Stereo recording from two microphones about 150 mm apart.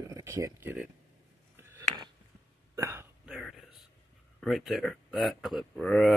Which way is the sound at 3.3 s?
Centre (ahead or behind).